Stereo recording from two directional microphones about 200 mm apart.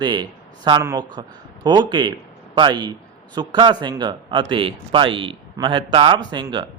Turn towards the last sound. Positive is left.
turn(degrees=-25)  # may be behind; listen again after turning